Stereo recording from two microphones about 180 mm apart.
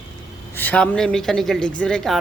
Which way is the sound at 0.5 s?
10° left (ahead or behind).